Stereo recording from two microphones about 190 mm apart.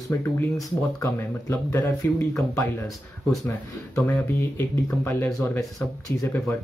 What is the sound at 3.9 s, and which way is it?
Speech, 10° left (ahead or behind).